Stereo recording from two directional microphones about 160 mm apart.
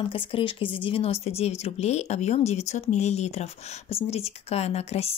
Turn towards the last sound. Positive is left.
turn(degrees=40)  # may be behind; listen again after turning